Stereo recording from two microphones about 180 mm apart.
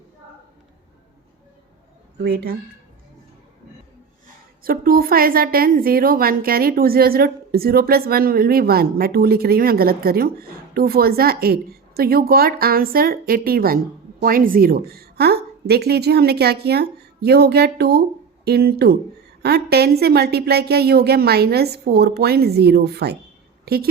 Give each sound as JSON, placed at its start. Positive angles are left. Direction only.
{"t": 2.1, "sound": "a woman's voice", "side_deg": -65}
{"t": 4.6, "sound": "a woman's voice", "side_deg": -55}